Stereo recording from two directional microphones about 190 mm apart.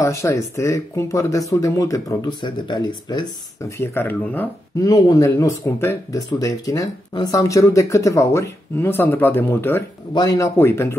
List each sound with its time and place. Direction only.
0.0 s speech: 15° left (ahead or behind)
4.7 s speech: 20° left (ahead or behind)